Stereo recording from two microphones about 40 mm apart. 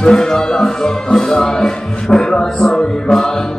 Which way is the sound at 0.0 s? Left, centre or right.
Centre.